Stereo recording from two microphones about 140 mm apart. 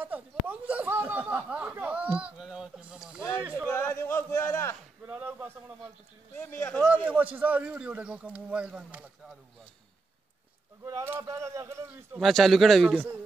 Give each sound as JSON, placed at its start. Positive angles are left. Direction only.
{"t": 0.0, "sound": "speech", "side_deg": -10}
{"t": 3.5, "sound": "a sound", "side_deg": 15}
{"t": 5.0, "sound": "a sound", "side_deg": -15}
{"t": 6.3, "sound": "speech", "side_deg": 10}
{"t": 7.3, "sound": "speech", "side_deg": -10}
{"t": 10.9, "sound": "a man's voice", "side_deg": -20}
{"t": 12.2, "sound": "a man's voice", "side_deg": 0}